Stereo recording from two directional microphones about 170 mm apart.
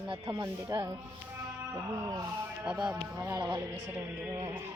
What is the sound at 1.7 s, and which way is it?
Music, 20° right (ahead or behind).